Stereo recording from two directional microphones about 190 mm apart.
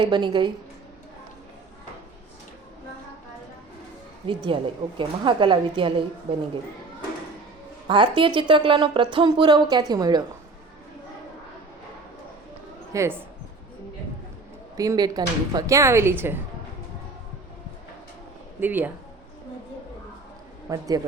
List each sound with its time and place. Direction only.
0.0 s speech: 25° right (ahead or behind)
4.3 s speech: 25° right (ahead or behind)
7.9 s speech: 25° right (ahead or behind)
12.9 s speech: 15° right (ahead or behind)
14.8 s speech: 20° right (ahead or behind)
18.6 s speech: 10° right (ahead or behind)
20.7 s speech: 20° right (ahead or behind)